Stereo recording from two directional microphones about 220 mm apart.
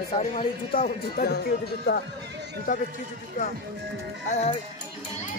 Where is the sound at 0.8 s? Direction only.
40° left (ahead or behind).